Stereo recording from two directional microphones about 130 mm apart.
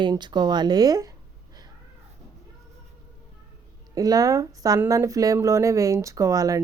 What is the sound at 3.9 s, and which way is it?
Speech, 30° right (ahead or behind).